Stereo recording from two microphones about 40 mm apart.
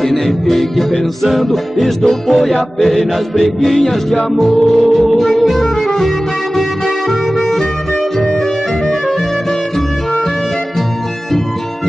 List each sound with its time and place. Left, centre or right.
0.0 s music: centre